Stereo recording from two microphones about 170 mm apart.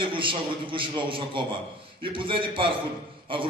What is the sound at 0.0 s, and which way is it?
A man's voice, 30° right (ahead or behind).